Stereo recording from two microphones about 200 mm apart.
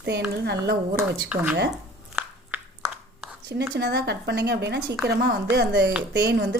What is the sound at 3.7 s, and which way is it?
A woman's voice, 55° right (ahead or behind).